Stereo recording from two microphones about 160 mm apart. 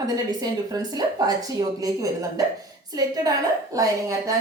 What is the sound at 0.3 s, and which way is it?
A woman's voice, 25° right (ahead or behind).